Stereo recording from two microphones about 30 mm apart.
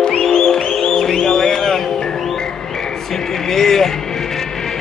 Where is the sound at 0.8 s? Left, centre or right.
Centre.